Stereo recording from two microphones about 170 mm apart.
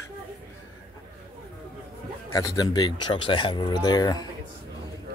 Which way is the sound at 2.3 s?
20° left (ahead or behind).